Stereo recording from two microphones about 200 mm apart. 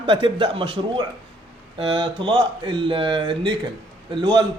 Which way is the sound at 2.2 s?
25° right (ahead or behind).